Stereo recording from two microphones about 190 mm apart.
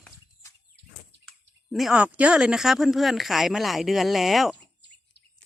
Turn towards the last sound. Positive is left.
turn(degrees=0)  # may be behind; listen again after turning